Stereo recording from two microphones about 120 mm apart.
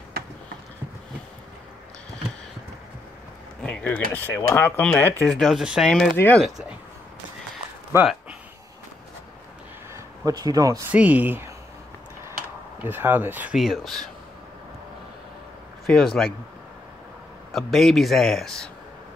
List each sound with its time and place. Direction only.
3.6 s speech: 10° left (ahead or behind)
5.2 s speech: centre (ahead or behind)
8.0 s a sound: 10° right (ahead or behind)
9.9 s speech: 30° right (ahead or behind)
10.9 s speech: 15° right (ahead or behind)
12.8 s speech: 15° right (ahead or behind)
13.6 s speech: centre (ahead or behind)
15.9 s speech: 5° left (ahead or behind)
17.5 s speech: centre (ahead or behind)